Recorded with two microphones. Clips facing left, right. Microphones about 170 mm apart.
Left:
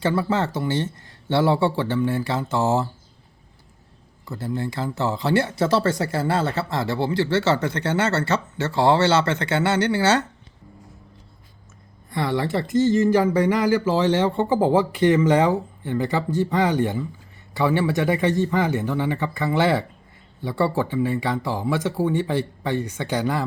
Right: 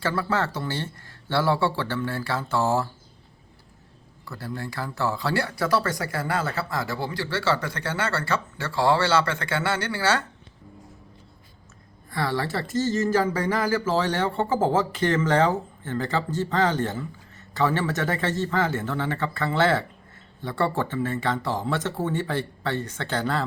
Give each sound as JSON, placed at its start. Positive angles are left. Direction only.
{"t": 0.0, "sound": "speech", "side_deg": 20}
{"t": 4.3, "sound": "speech", "side_deg": 20}
{"t": 12.1, "sound": "speech", "side_deg": 20}